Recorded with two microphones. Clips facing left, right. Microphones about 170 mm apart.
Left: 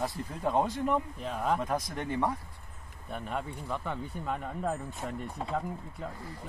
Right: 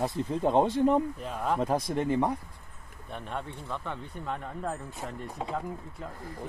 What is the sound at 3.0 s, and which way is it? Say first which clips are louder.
Speech: left 1 dB; 5° left (ahead or behind).